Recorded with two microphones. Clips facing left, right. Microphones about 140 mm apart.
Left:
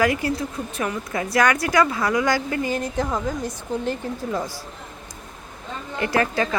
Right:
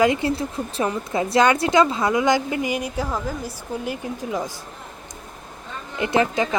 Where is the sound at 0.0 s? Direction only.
25° right (ahead or behind).